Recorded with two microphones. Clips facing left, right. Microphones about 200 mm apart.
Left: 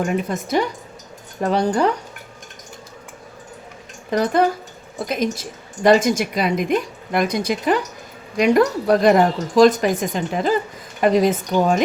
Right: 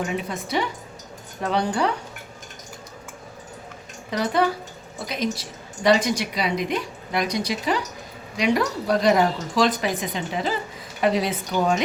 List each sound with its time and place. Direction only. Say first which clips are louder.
0.0 s a woman's voice: left 5 dB; 45° left (ahead or behind)
4.1 s a woman's voice: left 4 dB; 50° left (ahead or behind)